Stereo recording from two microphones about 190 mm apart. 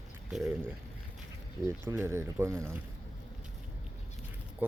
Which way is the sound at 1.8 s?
15° right (ahead or behind).